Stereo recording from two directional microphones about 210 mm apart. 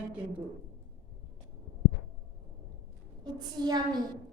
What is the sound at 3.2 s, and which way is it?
Speech, 20° right (ahead or behind).